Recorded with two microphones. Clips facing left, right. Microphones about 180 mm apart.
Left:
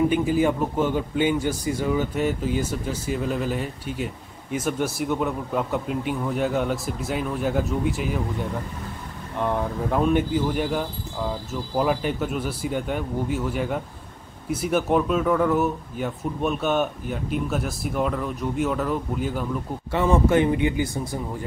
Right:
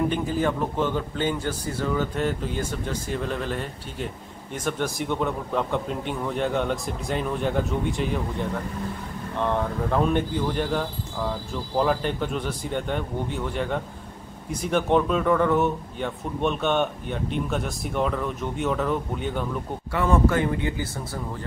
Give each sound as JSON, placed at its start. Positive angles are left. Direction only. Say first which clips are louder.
{"t": 0.1, "sound": "a man's voice", "louder": "left 4 dB", "side_deg": 10}
{"t": 9.4, "sound": "a man's voice", "louder": "even", "side_deg": 10}
{"t": 19.9, "sound": "a man's voice", "louder": "left 2 dB", "side_deg": 20}